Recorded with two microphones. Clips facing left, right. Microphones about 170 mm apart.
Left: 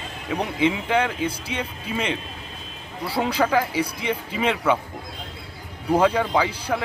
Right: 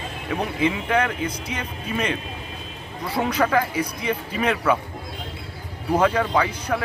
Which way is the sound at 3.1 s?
30° left (ahead or behind).